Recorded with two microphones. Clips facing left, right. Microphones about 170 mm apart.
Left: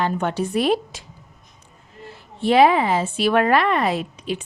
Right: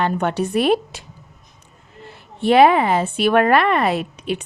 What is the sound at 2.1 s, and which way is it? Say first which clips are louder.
A woman's voice: right 2 dB; 60° right (ahead or behind).